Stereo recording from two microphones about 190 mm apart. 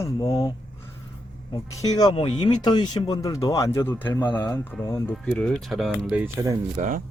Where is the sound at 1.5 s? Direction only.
20° left (ahead or behind); by 6.3 s 5° right (ahead or behind).